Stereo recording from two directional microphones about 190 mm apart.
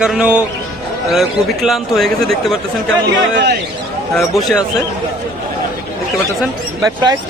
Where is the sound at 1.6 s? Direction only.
Centre (ahead or behind).